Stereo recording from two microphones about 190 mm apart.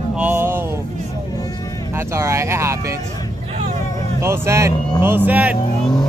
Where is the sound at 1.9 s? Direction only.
15° right (ahead or behind).